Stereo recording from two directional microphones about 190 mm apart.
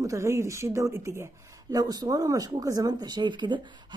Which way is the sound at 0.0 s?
15° right (ahead or behind).